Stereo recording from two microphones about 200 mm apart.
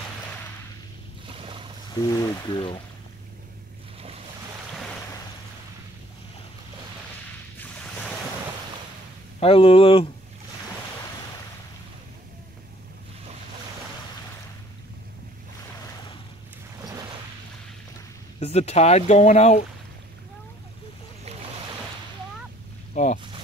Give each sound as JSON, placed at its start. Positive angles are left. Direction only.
{"t": 1.2, "sound": "boat", "side_deg": -25}
{"t": 2.0, "sound": "speech", "side_deg": 20}
{"t": 7.5, "sound": "waves", "side_deg": 5}
{"t": 9.4, "sound": "speech", "side_deg": 30}
{"t": 18.4, "sound": "speech", "side_deg": 30}
{"t": 23.0, "sound": "boat", "side_deg": 35}